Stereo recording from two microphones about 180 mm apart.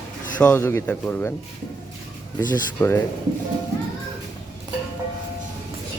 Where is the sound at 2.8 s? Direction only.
15° left (ahead or behind).